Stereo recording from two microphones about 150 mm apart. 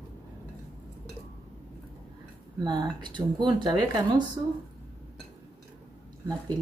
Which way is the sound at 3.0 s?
30° right (ahead or behind).